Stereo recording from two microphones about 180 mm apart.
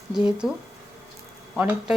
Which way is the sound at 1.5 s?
5° right (ahead or behind).